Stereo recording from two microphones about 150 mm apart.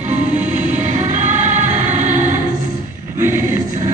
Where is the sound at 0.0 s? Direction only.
55° right (ahead or behind).